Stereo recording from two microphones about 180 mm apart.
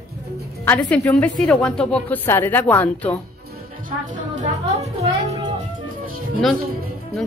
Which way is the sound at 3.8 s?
45° right (ahead or behind).